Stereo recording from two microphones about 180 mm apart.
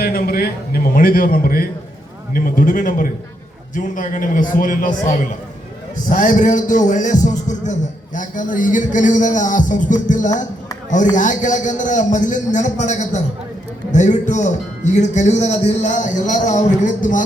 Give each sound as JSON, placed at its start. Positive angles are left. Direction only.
{"t": 0.0, "sound": "a man's voice", "side_deg": 55}